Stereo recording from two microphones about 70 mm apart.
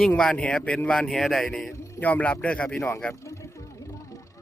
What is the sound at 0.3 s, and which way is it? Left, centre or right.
Speech, centre.